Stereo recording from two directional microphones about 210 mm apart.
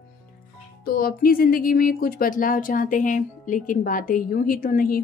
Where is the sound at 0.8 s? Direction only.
40° left (ahead or behind).